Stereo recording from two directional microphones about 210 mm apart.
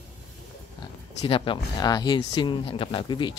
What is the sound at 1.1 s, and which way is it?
Speech, 25° left (ahead or behind).